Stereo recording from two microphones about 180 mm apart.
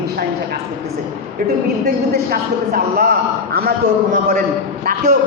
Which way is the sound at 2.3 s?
55° right (ahead or behind).